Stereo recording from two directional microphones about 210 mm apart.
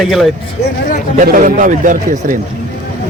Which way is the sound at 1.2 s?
40° right (ahead or behind).